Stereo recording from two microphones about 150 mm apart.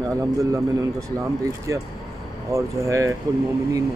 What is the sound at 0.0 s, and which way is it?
A man's voice, 20° right (ahead or behind).